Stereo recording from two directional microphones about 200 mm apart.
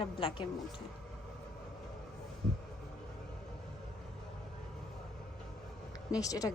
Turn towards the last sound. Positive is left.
turn(degrees=15)  # may be behind; listen again after turning